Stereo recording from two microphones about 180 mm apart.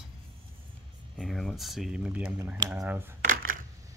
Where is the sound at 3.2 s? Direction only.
50° right (ahead or behind).